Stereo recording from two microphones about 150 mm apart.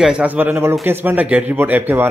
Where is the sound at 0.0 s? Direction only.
10° right (ahead or behind).